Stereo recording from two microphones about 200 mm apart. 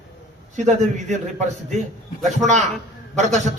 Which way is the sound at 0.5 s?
35° right (ahead or behind).